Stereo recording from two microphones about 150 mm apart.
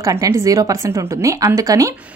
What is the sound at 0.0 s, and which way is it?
A woman's voice, 20° right (ahead or behind).